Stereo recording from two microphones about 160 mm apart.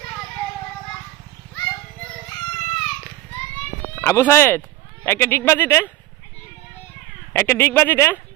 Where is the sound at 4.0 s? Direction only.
15° left (ahead or behind).